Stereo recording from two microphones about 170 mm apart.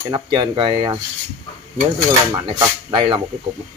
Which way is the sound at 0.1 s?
25° right (ahead or behind).